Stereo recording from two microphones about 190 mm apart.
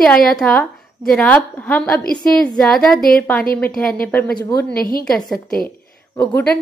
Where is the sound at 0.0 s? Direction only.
Centre (ahead or behind).